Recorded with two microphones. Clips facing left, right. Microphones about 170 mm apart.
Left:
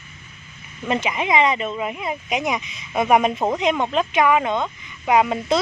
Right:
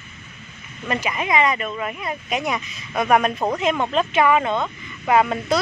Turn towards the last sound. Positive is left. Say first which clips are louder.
# even
turn(degrees=10)  # may be behind; listen again after turning